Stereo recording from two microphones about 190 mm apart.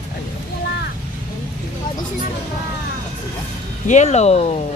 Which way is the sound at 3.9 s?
35° left (ahead or behind).